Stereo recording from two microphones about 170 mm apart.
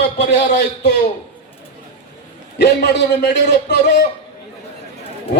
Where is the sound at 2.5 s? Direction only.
85° left.